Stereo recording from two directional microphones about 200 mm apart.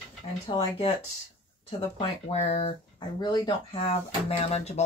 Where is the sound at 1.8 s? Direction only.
30° left (ahead or behind).